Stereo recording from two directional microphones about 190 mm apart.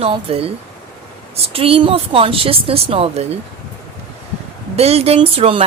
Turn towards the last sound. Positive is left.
turn(degrees=-30)  # may be behind; listen again after turning